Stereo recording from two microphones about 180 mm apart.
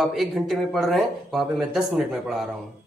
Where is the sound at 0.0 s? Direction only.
Centre (ahead or behind).